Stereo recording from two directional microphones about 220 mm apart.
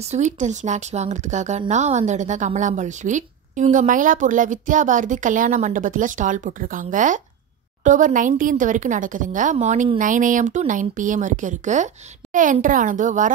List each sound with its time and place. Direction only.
0.0 s speech: 30° right (ahead or behind)